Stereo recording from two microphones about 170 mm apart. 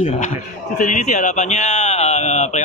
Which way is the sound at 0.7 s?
45° left (ahead or behind).